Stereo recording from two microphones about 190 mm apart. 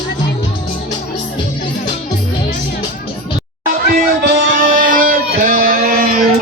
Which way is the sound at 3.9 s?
45° right (ahead or behind).